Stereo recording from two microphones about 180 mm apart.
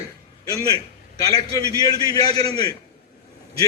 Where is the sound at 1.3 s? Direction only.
20° left (ahead or behind).